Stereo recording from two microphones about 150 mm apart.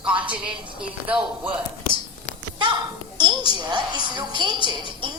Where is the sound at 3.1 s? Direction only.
30° right (ahead or behind).